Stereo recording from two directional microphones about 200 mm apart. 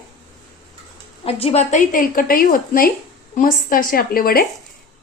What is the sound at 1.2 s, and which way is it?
A woman's voice, 30° left (ahead or behind).